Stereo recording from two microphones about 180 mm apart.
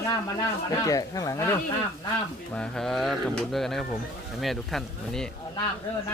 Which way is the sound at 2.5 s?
5° left (ahead or behind).